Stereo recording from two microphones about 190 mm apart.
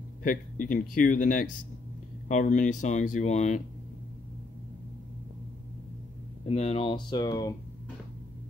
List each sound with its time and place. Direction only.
0.2 s speech: 45° left (ahead or behind)
6.4 s speech: 35° left (ahead or behind)